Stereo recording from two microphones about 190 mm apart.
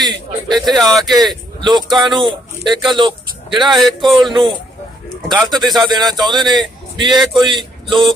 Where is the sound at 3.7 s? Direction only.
Centre (ahead or behind).